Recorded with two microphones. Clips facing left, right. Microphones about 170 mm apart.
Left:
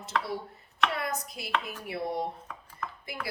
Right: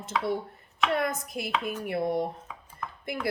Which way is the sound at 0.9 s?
50° right (ahead or behind).